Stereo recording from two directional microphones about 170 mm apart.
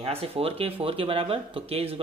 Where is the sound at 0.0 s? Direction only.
35° right (ahead or behind).